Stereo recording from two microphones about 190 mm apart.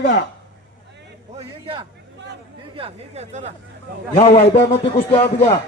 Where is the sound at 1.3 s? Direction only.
25° right (ahead or behind).